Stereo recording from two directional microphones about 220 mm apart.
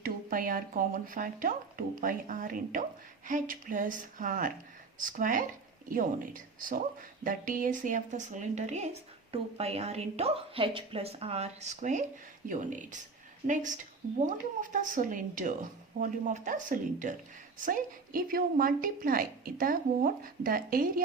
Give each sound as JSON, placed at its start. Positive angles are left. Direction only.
{"t": 0.0, "sound": "a woman's voice", "side_deg": -40}